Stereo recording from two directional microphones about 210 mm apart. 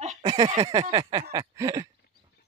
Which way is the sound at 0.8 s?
20° right (ahead or behind).